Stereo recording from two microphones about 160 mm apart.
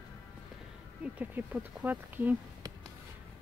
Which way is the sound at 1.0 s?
10° right (ahead or behind).